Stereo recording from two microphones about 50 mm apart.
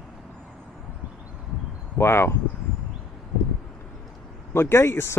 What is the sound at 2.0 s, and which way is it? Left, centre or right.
Speech, left.